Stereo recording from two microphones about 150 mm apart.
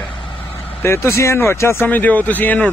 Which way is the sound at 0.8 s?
15° left (ahead or behind).